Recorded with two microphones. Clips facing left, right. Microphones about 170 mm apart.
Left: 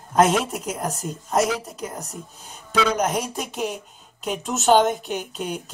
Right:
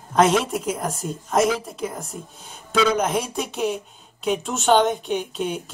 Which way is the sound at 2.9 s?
Centre (ahead or behind).